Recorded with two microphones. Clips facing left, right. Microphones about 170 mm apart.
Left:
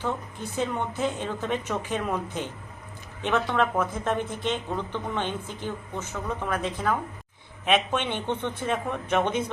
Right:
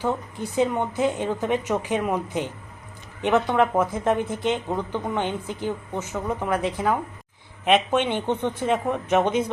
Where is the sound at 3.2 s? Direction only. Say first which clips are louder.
Right 5 dB; 15° right (ahead or behind).